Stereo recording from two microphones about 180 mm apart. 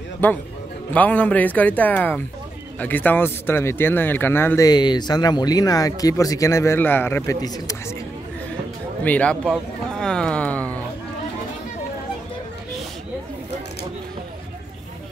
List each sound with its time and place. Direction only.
0.2 s speech: 10° left (ahead or behind)
9.0 s speech: 10° left (ahead or behind)